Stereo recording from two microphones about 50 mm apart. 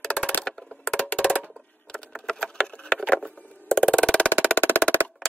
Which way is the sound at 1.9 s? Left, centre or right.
Centre.